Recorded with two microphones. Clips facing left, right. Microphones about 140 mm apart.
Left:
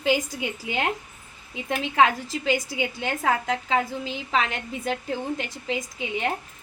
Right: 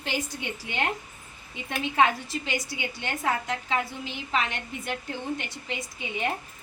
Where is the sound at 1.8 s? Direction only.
90° left.